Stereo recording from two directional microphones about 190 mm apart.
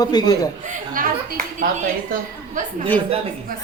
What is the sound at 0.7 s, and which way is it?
Speech, 45° right (ahead or behind).